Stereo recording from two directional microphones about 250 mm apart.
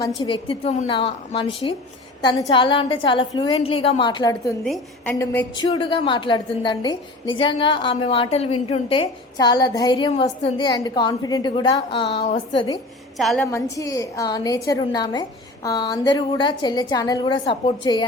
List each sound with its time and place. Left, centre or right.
0.2 s a woman's voice: centre
4.6 s a woman's voice: centre
13.1 s a woman's voice: centre